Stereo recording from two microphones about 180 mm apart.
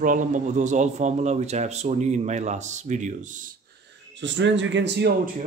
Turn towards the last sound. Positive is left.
turn(degrees=-80)